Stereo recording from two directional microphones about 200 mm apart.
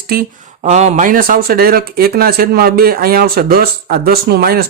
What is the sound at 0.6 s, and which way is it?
Speech, 35° right (ahead or behind).